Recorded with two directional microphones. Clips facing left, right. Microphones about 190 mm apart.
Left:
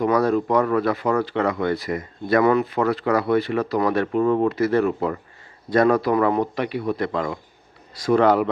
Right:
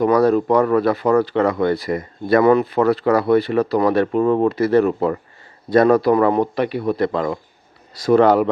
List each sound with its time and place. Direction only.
0.0 s a man's voice: 35° right (ahead or behind)